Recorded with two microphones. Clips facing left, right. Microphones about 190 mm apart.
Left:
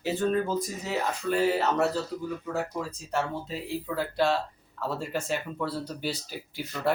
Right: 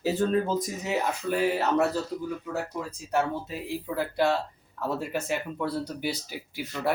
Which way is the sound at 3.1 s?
15° right (ahead or behind).